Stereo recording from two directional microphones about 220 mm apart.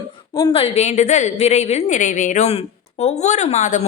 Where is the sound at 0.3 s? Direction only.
20° left (ahead or behind).